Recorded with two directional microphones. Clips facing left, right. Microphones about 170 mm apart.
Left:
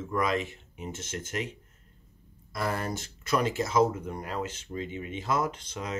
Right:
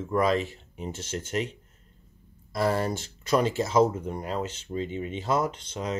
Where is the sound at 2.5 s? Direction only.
30° right (ahead or behind).